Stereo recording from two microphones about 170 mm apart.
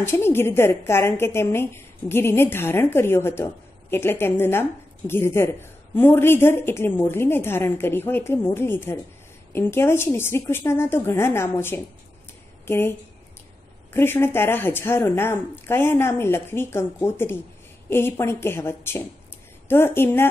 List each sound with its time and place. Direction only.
0.0 s a woman's voice: 15° left (ahead or behind)
13.9 s a woman's voice: 15° left (ahead or behind)